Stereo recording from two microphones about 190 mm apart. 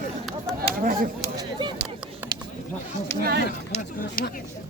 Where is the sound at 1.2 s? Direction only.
25° right (ahead or behind).